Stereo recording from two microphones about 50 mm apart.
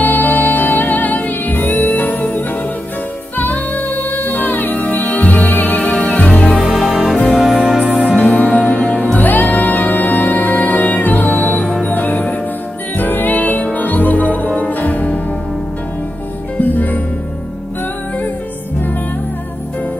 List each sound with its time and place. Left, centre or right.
0.0 s music: left
6.7 s music: centre
7.5 s music: centre
7.8 s music: right
8.2 s music: left
16.5 s music: left